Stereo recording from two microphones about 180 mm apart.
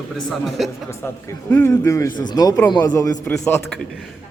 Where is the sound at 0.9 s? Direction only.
15° left (ahead or behind).